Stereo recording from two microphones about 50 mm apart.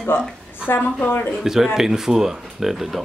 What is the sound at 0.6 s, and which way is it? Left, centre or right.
Speech, left.